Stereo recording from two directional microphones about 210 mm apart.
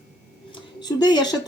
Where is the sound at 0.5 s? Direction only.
20° left (ahead or behind).